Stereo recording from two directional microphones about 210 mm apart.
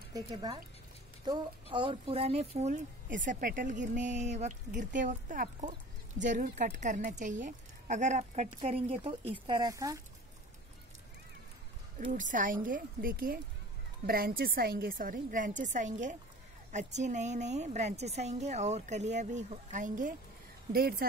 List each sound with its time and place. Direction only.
0.1 s speech: 20° right (ahead or behind)
12.0 s a woman's voice: 35° right (ahead or behind)